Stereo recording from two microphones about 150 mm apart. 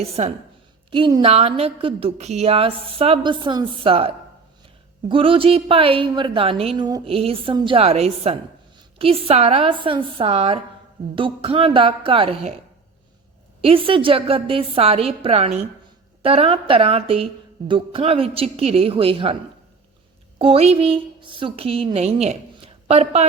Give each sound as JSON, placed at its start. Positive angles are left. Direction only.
{"t": 0.0, "sound": "a woman's voice", "side_deg": -45}
{"t": 13.6, "sound": "a woman's voice", "side_deg": -35}
{"t": 20.4, "sound": "a woman's voice", "side_deg": -40}
{"t": 22.5, "sound": "a sound", "side_deg": -40}